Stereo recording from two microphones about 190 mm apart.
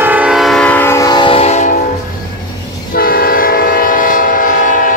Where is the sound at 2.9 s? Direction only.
50° left (ahead or behind).